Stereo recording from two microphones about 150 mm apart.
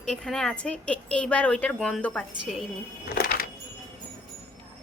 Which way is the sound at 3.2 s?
75° left (ahead or behind).